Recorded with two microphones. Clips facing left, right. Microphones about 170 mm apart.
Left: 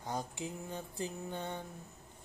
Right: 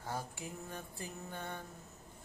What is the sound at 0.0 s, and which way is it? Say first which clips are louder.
Music: left 3 dB; 20° left (ahead or behind).